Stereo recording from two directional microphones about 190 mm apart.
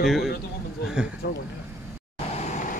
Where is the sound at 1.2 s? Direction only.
60° left (ahead or behind).